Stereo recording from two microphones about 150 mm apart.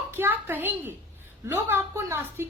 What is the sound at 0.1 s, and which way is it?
A woman's voice, 15° right (ahead or behind).